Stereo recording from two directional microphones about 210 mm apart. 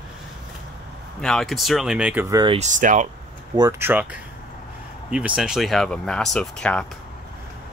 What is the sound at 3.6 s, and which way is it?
Speech, 10° right (ahead or behind).